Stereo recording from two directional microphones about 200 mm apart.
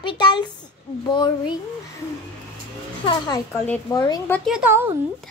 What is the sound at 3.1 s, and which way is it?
A child's voice, 20° left (ahead or behind).